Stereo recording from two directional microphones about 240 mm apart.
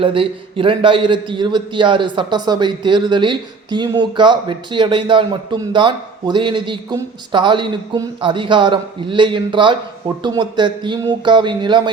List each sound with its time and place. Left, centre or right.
0.0 s a man's voice: right